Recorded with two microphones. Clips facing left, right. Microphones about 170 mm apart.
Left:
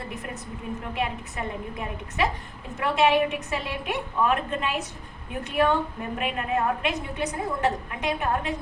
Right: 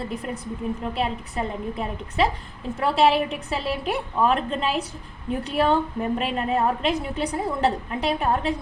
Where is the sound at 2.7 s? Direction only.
30° right (ahead or behind).